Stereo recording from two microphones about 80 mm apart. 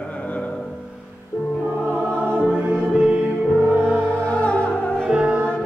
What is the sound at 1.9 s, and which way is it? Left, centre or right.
Music, centre.